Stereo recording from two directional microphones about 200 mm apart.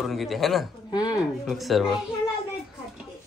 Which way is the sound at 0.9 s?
20° left (ahead or behind).